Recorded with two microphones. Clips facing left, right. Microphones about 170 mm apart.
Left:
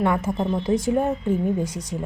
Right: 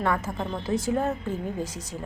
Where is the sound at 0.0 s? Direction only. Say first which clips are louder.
Left 5 dB; 20° left (ahead or behind).